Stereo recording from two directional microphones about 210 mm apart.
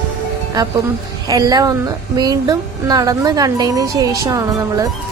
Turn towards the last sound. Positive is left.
turn(degrees=-15)  # may be behind; listen again after turning